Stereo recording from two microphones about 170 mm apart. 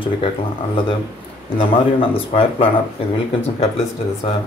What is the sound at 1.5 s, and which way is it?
Speech, 35° left (ahead or behind).